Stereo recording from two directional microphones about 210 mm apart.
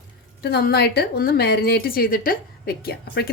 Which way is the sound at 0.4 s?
50° left (ahead or behind).